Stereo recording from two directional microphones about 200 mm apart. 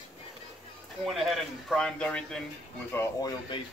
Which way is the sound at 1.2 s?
Centre (ahead or behind).